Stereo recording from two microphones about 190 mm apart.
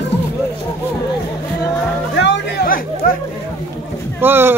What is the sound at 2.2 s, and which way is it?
Chatter, 65° left (ahead or behind).